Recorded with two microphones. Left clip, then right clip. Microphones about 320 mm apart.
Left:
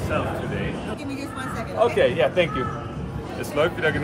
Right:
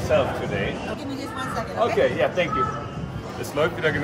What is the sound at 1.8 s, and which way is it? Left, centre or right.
Speech, left.